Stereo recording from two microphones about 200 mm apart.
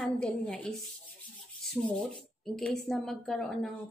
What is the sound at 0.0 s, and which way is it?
A woman's voice, 5° left (ahead or behind).